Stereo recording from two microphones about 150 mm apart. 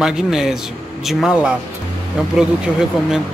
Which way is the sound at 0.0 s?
5° right (ahead or behind).